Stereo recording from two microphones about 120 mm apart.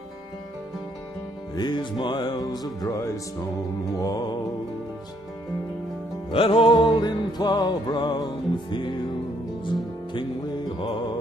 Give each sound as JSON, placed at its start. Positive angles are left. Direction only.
{"t": 1.5, "sound": "music", "side_deg": 35}
{"t": 6.3, "sound": "music", "side_deg": 50}